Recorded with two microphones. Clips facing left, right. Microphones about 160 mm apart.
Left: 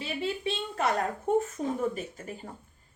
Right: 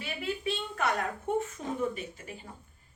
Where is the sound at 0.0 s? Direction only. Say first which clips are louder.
Left 2 dB; 30° left (ahead or behind).